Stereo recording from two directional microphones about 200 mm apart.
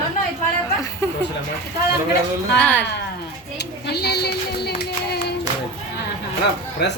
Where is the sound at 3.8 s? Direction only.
55° left (ahead or behind).